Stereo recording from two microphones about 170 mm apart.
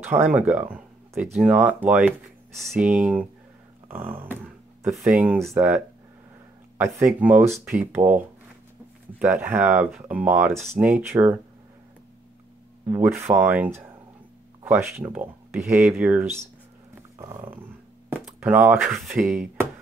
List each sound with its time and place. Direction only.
0.0 s speech: 10° right (ahead or behind)
7.0 s speech: 10° right (ahead or behind)
9.2 s speech: 10° right (ahead or behind)
12.8 s speech: 15° right (ahead or behind)
16.9 s dog: 15° right (ahead or behind)
18.4 s speech: 10° right (ahead or behind)
19.2 s speech: 10° right (ahead or behind)